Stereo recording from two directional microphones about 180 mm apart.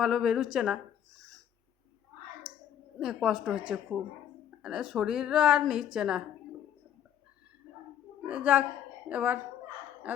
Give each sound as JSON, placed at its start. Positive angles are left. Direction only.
{"t": 0.0, "sound": "a woman's voice", "side_deg": 0}
{"t": 3.0, "sound": "a woman's voice", "side_deg": 0}
{"t": 8.3, "sound": "a woman's voice", "side_deg": -5}